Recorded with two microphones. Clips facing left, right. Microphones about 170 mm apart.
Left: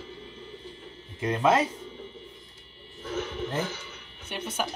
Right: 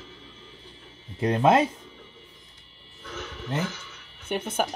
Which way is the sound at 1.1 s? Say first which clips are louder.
Right 3 dB; 35° right (ahead or behind).